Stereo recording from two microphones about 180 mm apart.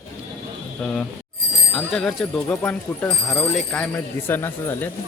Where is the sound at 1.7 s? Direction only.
5° left (ahead or behind).